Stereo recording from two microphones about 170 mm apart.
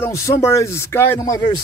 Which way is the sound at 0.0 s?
15° left (ahead or behind).